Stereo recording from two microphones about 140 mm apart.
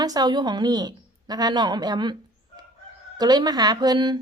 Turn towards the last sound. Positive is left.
turn(degrees=-30)  # may be behind; listen again after turning